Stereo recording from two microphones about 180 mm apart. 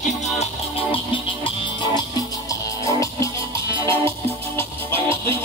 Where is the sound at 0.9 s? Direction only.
30° left (ahead or behind).